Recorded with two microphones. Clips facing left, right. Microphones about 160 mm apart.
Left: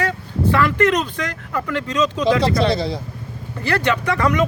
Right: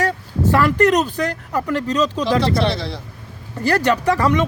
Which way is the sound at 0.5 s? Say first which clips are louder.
Right 2 dB; 40° right (ahead or behind).